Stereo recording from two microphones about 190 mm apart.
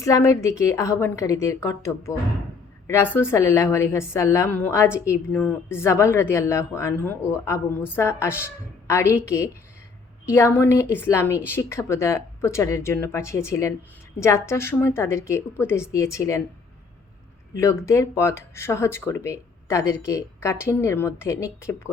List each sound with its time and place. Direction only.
0.0 s a woman's voice: 15° left (ahead or behind)
17.5 s a woman's voice: 15° left (ahead or behind)